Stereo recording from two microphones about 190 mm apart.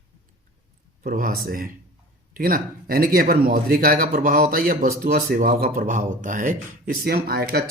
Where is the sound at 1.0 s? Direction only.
50° right (ahead or behind).